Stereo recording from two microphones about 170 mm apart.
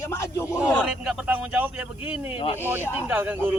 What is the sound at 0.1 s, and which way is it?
Speech, 15° left (ahead or behind).